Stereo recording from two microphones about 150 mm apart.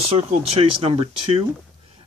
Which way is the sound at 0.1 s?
40° right (ahead or behind).